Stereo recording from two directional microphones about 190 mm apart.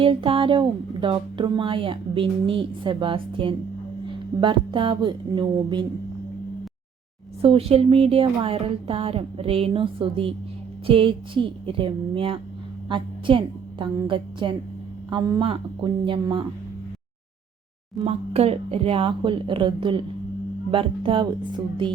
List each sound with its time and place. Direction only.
0.0 s speech: 30° right (ahead or behind)
7.4 s a woman's voice: 30° right (ahead or behind)
17.9 s speech: 30° right (ahead or behind)